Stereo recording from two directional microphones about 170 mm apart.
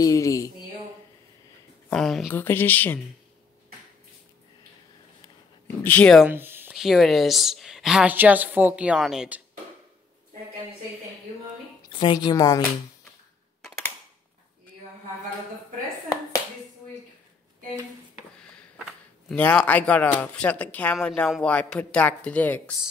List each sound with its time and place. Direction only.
0.0 s a sound: 20° left (ahead or behind)
1.9 s a woman's voice: centre (ahead or behind)
2.3 s speech: 10° left (ahead or behind)
5.9 s a woman's voice: 5° left (ahead or behind)
6.2 s a sound: 10° right (ahead or behind)
6.7 s a woman's voice: centre (ahead or behind)
11.9 s a woman's voice: 30° left (ahead or behind)
18.4 s a sound: 5° left (ahead or behind)
19.3 s speech: 10° left (ahead or behind)